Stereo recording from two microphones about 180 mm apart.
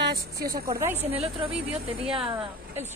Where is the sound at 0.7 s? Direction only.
15° right (ahead or behind).